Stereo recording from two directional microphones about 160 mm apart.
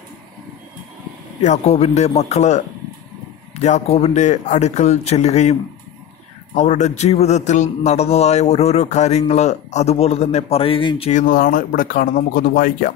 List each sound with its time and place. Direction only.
1.4 s a man's voice: 45° left (ahead or behind)
11.1 s speech: 55° left (ahead or behind)